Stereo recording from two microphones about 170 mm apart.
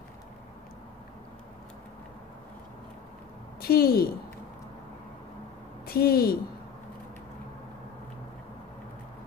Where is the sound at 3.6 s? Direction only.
65° left (ahead or behind).